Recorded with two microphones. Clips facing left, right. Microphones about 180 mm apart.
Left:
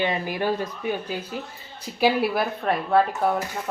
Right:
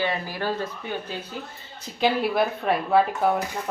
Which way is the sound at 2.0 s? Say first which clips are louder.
Left 1 dB; 5° left (ahead or behind).